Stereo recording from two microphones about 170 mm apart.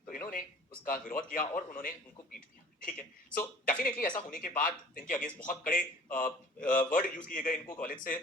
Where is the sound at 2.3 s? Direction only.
55° left (ahead or behind).